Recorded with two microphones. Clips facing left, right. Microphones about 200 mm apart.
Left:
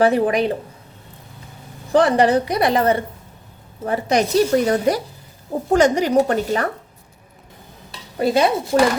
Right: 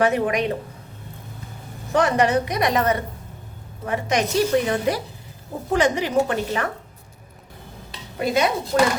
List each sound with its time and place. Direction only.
0.0 s a woman's voice: 30° left (ahead or behind)
1.9 s a woman's voice: 35° left (ahead or behind)
8.2 s a woman's voice: 30° left (ahead or behind)